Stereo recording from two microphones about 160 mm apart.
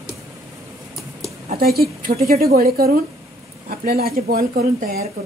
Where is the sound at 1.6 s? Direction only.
70° right (ahead or behind).